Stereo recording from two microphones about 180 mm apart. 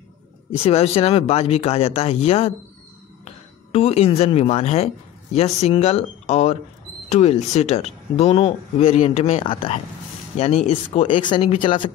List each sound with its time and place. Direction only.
0.7 s speech: 35° left (ahead or behind)